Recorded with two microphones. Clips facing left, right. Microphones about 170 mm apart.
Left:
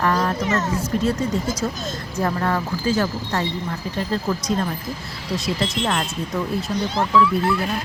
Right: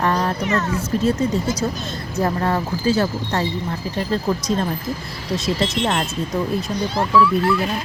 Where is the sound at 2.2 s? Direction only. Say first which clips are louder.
Right 1 dB; 30° right (ahead or behind).